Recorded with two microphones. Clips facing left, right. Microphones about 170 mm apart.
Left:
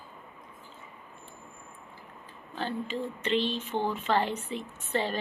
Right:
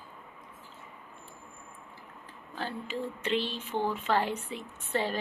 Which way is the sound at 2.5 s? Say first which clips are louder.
Left 3 dB; 5° right (ahead or behind).